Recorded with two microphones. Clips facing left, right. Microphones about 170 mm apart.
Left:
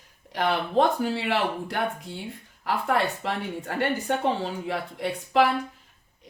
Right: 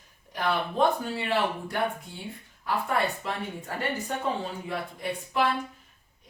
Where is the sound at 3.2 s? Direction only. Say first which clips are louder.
Left 4 dB; 75° left (ahead or behind).